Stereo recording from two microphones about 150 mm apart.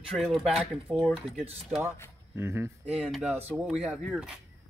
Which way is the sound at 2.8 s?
5° right (ahead or behind).